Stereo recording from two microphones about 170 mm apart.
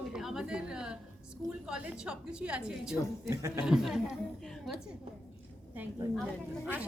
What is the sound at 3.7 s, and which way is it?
Speech, 5° right (ahead or behind).